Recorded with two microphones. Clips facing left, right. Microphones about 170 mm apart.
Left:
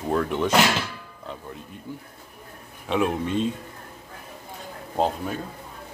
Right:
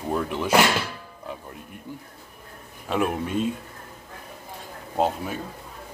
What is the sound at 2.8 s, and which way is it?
Speech, 5° right (ahead or behind).